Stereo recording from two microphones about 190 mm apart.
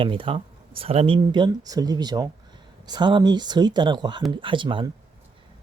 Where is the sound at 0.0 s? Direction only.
25° right (ahead or behind).